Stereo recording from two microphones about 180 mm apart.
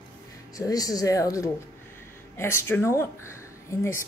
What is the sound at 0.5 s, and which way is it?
Speech, 20° left (ahead or behind).